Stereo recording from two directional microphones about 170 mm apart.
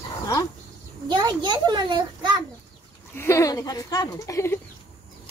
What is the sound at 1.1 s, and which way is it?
A child's voice, 25° right (ahead or behind).